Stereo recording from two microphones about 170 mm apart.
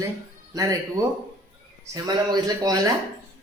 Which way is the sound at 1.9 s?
20° right (ahead or behind).